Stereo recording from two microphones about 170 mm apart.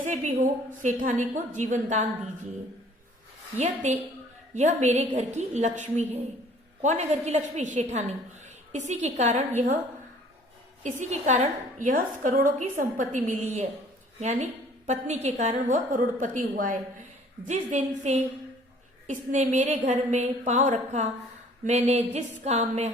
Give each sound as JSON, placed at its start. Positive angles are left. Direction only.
{"t": 0.0, "sound": "a woman's voice", "side_deg": -45}
{"t": 3.8, "sound": "a woman's voice", "side_deg": -45}
{"t": 10.8, "sound": "a woman's voice", "side_deg": -45}
{"t": 14.2, "sound": "a sound", "side_deg": -40}
{"t": 14.8, "sound": "a woman's voice", "side_deg": -40}
{"t": 21.6, "sound": "a sound", "side_deg": -45}